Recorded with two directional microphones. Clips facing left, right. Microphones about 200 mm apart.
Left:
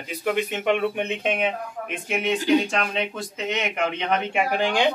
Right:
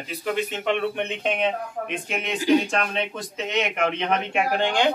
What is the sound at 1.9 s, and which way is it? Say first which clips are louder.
A man's voice: left 6 dB; centre (ahead or behind).